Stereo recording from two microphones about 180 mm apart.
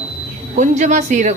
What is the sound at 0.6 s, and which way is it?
Speech, 40° right (ahead or behind).